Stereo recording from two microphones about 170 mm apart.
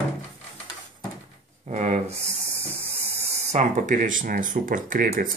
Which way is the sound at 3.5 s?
45° right (ahead or behind).